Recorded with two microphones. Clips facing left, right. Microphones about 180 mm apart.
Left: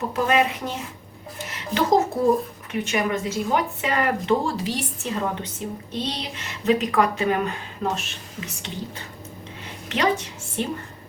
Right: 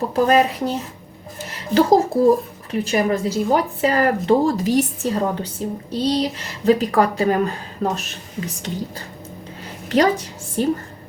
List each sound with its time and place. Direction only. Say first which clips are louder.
0.1 s speech: right 5 dB; 35° right (ahead or behind)
1.5 s a sound: right 9 dB; 35° right (ahead or behind)
2.2 s a woman's voice: right 5 dB; 35° right (ahead or behind)